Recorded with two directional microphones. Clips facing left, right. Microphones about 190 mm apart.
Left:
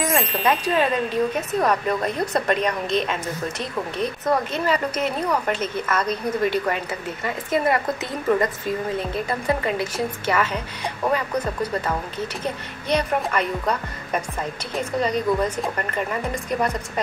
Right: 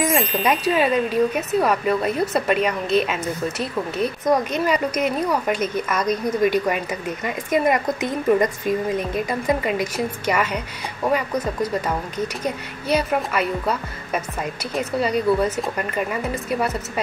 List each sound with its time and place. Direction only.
0.0 s wind chime: centre (ahead or behind)
0.5 s speech: 10° right (ahead or behind)
12.4 s speech: 5° right (ahead or behind)